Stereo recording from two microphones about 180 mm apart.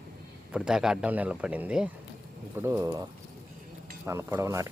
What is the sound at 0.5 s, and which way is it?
Speech, 5° right (ahead or behind).